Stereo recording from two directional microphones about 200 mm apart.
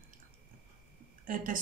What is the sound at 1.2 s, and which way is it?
Speech, 40° right (ahead or behind).